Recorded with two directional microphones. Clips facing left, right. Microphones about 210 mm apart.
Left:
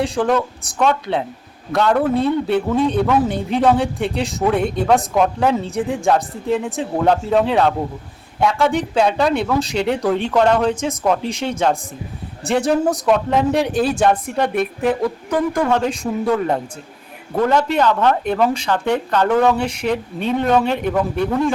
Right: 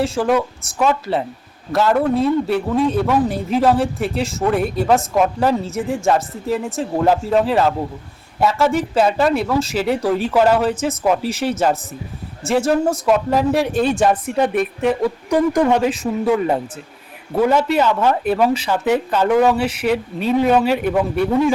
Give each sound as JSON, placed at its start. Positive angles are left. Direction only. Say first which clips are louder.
{"t": 0.0, "sound": "speech", "louder": "even", "side_deg": 0}
{"t": 15.3, "sound": "speech", "louder": "right 3 dB", "side_deg": -15}
{"t": 15.8, "sound": "speech", "louder": "right 2 dB", "side_deg": -5}